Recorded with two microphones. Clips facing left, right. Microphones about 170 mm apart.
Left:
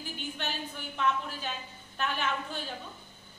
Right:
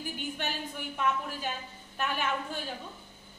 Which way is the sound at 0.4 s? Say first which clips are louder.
Right 1 dB; 10° right (ahead or behind).